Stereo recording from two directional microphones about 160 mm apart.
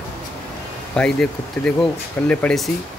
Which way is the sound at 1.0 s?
5° left (ahead or behind).